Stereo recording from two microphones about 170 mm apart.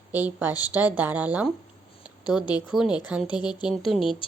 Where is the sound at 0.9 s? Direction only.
10° right (ahead or behind).